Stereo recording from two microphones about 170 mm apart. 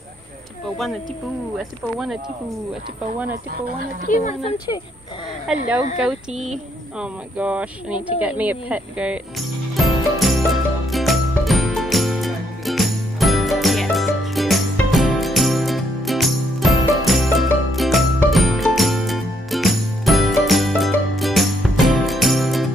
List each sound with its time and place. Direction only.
1.6 s speech: centre (ahead or behind)
3.3 s speech: 55° right (ahead or behind)
4.1 s speech: 40° left (ahead or behind)
6.3 s speech: 45° right (ahead or behind)
7.0 s speech: 5° right (ahead or behind)
9.8 s music: centre (ahead or behind)